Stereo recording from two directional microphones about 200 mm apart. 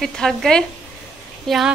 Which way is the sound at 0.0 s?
Centre (ahead or behind).